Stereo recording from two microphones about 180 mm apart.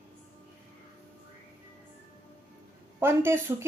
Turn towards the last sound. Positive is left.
turn(degrees=-15)  # may be behind; listen again after turning